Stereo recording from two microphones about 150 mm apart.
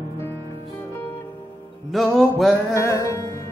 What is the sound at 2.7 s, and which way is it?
Music, 20° left (ahead or behind).